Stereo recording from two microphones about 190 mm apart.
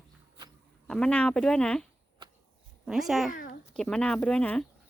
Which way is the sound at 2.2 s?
25° right (ahead or behind).